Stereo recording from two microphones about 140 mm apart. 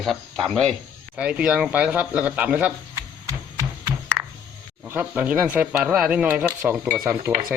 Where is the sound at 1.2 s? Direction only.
10° right (ahead or behind).